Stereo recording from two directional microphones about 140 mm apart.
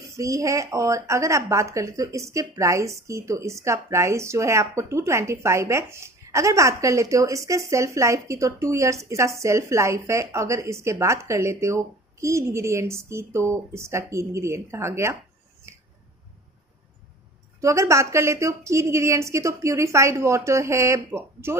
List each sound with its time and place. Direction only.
0.1 s a woman's voice: 25° right (ahead or behind)
17.6 s a woman's voice: 20° right (ahead or behind)